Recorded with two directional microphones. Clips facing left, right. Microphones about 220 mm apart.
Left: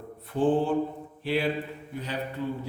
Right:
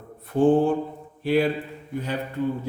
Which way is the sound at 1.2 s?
45° right (ahead or behind).